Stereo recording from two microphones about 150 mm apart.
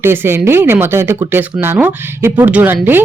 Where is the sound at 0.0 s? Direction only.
15° right (ahead or behind).